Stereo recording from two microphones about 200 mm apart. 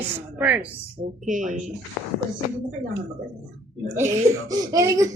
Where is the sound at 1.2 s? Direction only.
40° right (ahead or behind).